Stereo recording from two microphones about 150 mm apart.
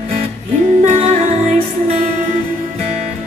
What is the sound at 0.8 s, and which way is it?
Music, 50° right (ahead or behind).